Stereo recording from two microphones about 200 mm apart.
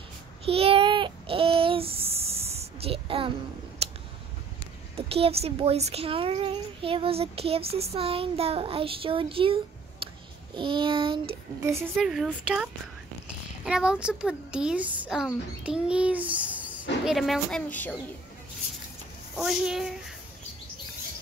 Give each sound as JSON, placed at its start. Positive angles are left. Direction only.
{"t": 0.5, "sound": "a sound", "side_deg": -30}
{"t": 4.9, "sound": "speech", "side_deg": -30}
{"t": 11.6, "sound": "a woman's voice", "side_deg": -10}
{"t": 19.3, "sound": "speech", "side_deg": 0}